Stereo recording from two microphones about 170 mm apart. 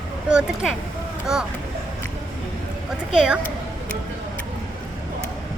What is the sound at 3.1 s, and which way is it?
Speech, 5° right (ahead or behind).